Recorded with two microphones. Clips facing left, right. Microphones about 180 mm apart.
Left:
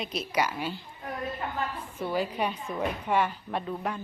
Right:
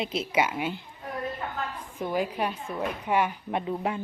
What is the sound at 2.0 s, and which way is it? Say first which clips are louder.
A woman's voice: right 1 dB; 10° right (ahead or behind).